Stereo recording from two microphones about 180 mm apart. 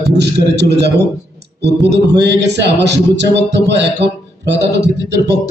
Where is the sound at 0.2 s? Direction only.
70° right (ahead or behind).